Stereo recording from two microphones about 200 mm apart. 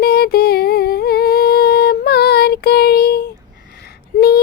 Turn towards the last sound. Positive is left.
turn(degrees=50)  # may be behind; listen again after turning